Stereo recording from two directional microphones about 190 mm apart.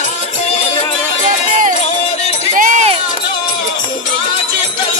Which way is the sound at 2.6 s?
40° right (ahead or behind).